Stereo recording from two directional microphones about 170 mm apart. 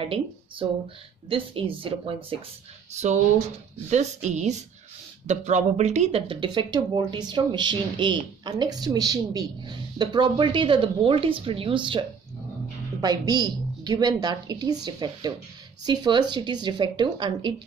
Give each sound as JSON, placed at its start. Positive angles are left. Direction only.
{"t": 0.0, "sound": "speech", "side_deg": -30}